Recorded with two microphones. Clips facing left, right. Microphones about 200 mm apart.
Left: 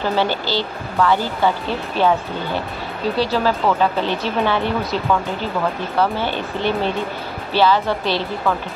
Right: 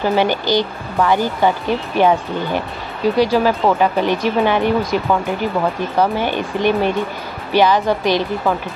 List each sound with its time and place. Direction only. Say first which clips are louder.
0.0 s speech: right 3 dB; 15° right (ahead or behind)